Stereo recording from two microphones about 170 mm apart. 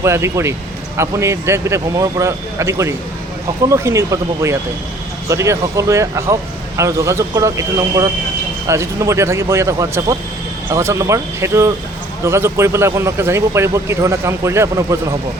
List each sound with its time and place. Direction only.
0.0 s speech: 15° right (ahead or behind)